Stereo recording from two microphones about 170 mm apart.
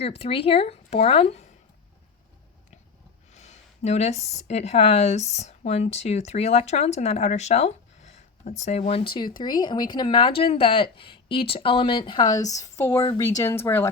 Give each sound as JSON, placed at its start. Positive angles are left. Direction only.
{"t": 0.0, "sound": "speech", "side_deg": 35}
{"t": 3.3, "sound": "speech", "side_deg": 40}